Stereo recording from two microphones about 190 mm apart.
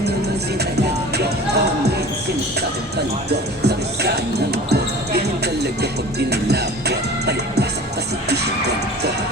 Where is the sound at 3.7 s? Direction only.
60° right (ahead or behind).